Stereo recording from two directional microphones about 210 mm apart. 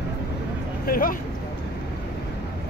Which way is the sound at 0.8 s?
45° left (ahead or behind).